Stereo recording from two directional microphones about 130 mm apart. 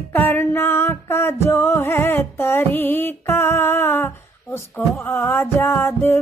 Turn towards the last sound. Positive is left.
turn(degrees=15)  # may be behind; listen again after turning